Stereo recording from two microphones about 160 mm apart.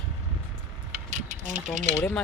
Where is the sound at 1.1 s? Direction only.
50° right (ahead or behind).